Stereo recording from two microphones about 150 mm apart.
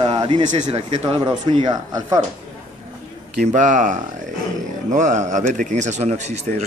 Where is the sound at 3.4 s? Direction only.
55° right (ahead or behind).